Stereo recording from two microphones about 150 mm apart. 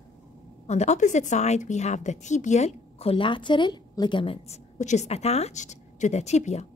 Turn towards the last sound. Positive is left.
turn(degrees=50)  # may be behind; listen again after turning